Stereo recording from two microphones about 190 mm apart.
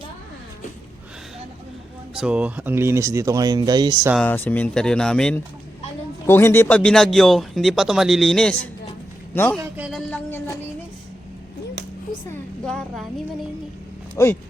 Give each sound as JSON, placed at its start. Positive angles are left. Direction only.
{"t": 2.1, "sound": "speech", "side_deg": -5}
{"t": 4.3, "sound": "a man's voice", "side_deg": 10}
{"t": 9.6, "sound": "speech", "side_deg": -5}
{"t": 10.1, "sound": "a sound", "side_deg": 10}
{"t": 12.3, "sound": "vehicle", "side_deg": 5}
{"t": 14.2, "sound": "speech", "side_deg": 15}